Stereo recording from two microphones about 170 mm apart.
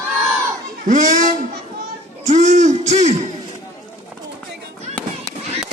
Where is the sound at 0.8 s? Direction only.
50° right (ahead or behind).